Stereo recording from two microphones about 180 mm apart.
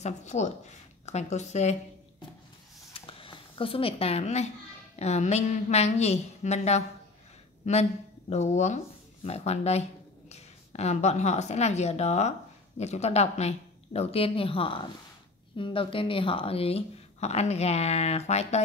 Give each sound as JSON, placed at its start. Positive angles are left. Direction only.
{"t": 0.0, "sound": "speech", "side_deg": 40}
{"t": 2.9, "sound": "a sound", "side_deg": 30}
{"t": 4.9, "sound": "a woman's voice", "side_deg": 40}